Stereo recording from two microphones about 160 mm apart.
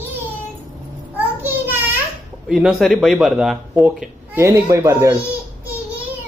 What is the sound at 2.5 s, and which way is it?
Speech, 5° right (ahead or behind).